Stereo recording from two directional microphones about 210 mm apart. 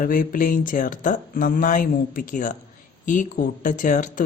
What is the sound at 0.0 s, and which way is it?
Speech, 40° left (ahead or behind).